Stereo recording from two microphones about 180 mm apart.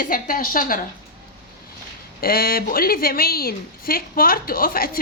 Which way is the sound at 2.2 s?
55° left (ahead or behind).